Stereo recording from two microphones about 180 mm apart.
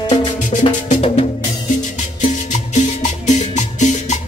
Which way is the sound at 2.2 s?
40° left (ahead or behind).